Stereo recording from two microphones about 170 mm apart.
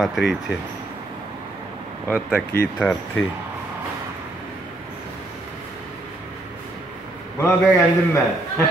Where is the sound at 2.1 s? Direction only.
10° left (ahead or behind).